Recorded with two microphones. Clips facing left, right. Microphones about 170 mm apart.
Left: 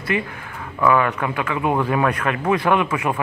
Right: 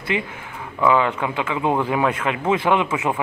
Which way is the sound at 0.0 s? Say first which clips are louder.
Left 1 dB; 20° right (ahead or behind).